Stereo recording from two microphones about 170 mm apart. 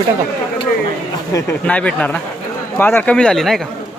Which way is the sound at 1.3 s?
10° left (ahead or behind).